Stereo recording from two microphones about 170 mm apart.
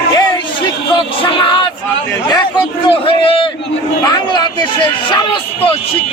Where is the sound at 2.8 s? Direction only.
30° left (ahead or behind).